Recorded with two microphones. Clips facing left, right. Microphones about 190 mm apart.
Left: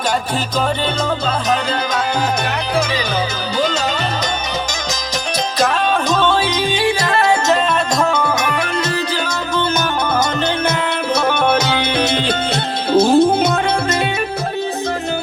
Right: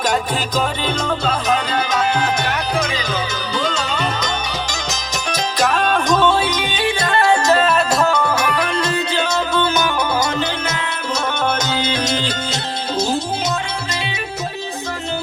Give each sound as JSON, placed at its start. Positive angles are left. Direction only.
{"t": 7.9, "sound": "music", "side_deg": 0}
{"t": 11.1, "sound": "music", "side_deg": 60}